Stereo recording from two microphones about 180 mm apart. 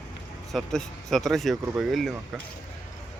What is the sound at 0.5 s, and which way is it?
Speech, centre (ahead or behind).